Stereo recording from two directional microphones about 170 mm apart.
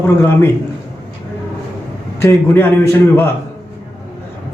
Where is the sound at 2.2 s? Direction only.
15° left (ahead or behind).